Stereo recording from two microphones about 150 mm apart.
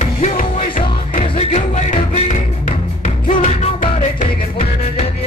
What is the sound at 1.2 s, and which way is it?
Music, 40° left (ahead or behind).